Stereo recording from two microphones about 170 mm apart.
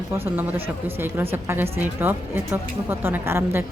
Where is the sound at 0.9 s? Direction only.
15° right (ahead or behind).